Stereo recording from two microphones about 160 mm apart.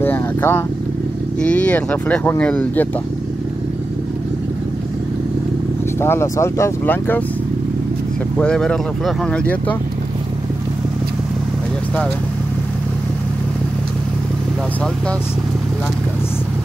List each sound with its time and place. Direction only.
0.0 s vehicle: 10° left (ahead or behind)
1.4 s speech: 10° left (ahead or behind)
5.9 s speech: 15° left (ahead or behind)
8.4 s speech: 5° left (ahead or behind)